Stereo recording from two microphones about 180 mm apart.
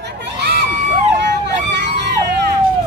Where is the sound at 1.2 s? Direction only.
75° right (ahead or behind).